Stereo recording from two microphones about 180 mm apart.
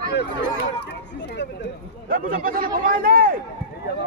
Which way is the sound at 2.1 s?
50° right (ahead or behind).